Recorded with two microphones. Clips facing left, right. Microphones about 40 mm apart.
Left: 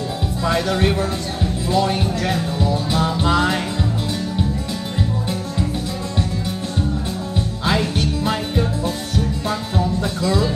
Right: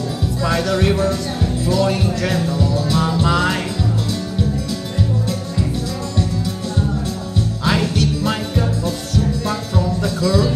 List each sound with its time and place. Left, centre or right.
0.5 s speech: left
2.5 s music: left
7.6 s music: centre